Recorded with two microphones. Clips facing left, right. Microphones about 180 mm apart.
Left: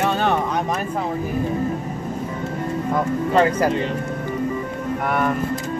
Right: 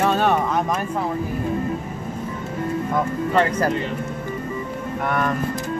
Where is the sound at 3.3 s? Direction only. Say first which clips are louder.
Left 3 dB; 15° left (ahead or behind).